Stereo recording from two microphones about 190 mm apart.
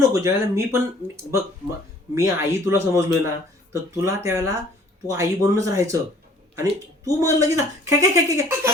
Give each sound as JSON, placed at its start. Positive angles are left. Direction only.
{"t": 0.0, "sound": "speech", "side_deg": -15}